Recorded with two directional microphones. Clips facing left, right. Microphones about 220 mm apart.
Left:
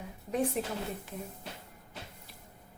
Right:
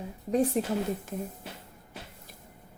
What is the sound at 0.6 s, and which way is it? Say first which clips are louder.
Speech: right 5 dB; 40° right (ahead or behind).